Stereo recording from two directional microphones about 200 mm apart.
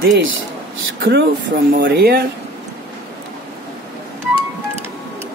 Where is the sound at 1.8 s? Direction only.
50° right (ahead or behind).